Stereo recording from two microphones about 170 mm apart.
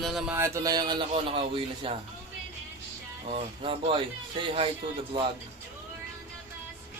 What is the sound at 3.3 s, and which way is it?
Speech, 35° right (ahead or behind).